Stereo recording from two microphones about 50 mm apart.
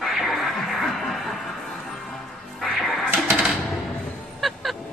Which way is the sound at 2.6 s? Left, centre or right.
Centre.